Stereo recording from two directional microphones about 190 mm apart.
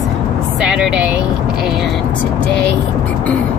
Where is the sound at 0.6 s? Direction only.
5° right (ahead or behind).